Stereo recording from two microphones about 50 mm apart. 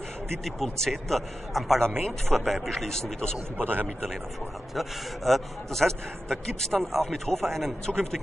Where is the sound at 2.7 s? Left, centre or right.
Centre.